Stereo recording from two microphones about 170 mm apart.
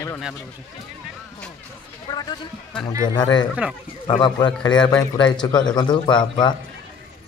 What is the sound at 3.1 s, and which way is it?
A man's voice, 25° left (ahead or behind).